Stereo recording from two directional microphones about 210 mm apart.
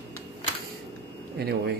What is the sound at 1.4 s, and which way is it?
Speech, 50° right (ahead or behind).